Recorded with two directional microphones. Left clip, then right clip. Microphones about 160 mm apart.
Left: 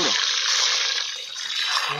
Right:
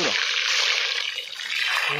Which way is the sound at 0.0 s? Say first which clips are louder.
Left 1 dB; 30° right (ahead or behind).